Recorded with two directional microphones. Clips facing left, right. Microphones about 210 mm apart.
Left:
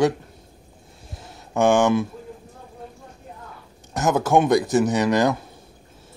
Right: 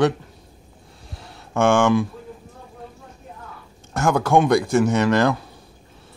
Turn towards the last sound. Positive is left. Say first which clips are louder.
# right 1 dB
turn(degrees=15)  # may be behind; listen again after turning